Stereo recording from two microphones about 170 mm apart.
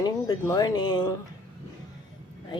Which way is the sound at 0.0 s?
20° left (ahead or behind).